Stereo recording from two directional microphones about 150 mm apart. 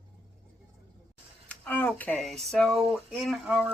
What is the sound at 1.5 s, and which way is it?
Speech, 10° left (ahead or behind).